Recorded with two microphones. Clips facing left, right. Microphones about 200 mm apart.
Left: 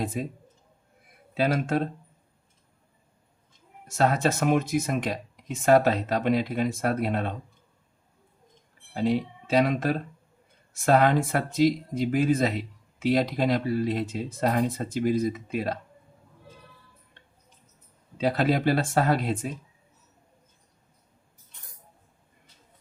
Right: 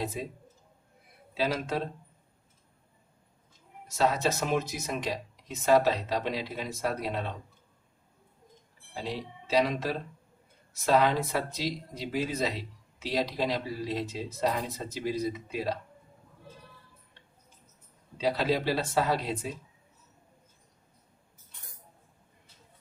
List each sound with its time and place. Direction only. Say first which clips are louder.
0.0 s speech: left 4 dB; 50° left (ahead or behind)
1.3 s speech: left 5 dB; 50° left (ahead or behind)
3.8 s speech: left 3 dB; 50° left (ahead or behind)
9.0 s speech: left 11 dB; 55° left (ahead or behind)
18.2 s speech: left 4 dB; 50° left (ahead or behind)